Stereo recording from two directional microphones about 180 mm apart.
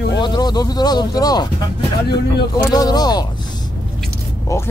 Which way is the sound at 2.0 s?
65° left (ahead or behind).